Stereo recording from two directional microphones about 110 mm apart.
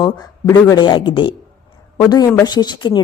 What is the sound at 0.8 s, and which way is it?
Speech, 45° left (ahead or behind).